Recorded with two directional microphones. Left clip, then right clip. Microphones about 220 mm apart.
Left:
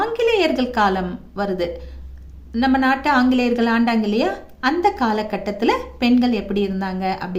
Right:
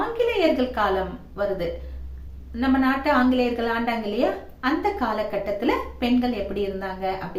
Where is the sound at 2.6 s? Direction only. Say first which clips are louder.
Left 5 dB; 50° left (ahead or behind).